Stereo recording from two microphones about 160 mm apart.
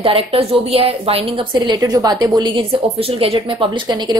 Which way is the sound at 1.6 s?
25° right (ahead or behind).